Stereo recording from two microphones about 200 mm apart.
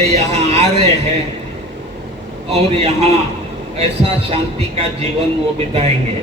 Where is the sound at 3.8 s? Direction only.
30° right (ahead or behind).